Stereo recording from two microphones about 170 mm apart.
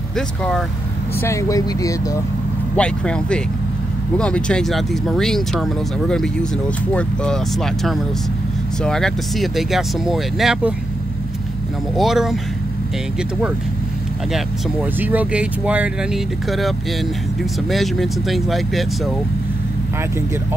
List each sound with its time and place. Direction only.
0.4 s speech: centre (ahead or behind)
1.2 s speech: 20° left (ahead or behind)
2.7 s speech: 5° left (ahead or behind)
12.0 s speech: centre (ahead or behind)
14.3 s speech: 10° right (ahead or behind)